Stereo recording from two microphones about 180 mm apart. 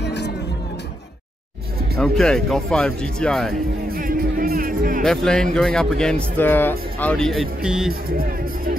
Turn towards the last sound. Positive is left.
turn(degrees=-5)  # may be behind; listen again after turning